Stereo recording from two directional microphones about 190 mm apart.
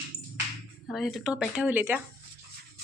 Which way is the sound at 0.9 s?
Centre (ahead or behind).